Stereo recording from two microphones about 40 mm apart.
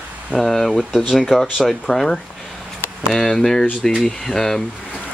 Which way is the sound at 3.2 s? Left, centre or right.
Centre.